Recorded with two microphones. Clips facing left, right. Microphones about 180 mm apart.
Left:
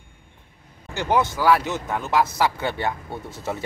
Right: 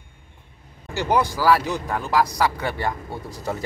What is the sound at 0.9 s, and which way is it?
Speech, 5° right (ahead or behind).